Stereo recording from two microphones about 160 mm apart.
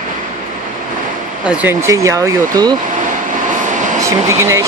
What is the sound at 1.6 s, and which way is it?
Speech, 15° right (ahead or behind).